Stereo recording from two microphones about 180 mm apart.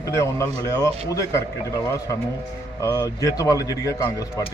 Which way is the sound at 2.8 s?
20° left (ahead or behind).